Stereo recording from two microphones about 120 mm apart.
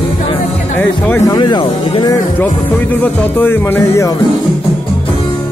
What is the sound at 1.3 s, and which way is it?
Speech, 40° left (ahead or behind).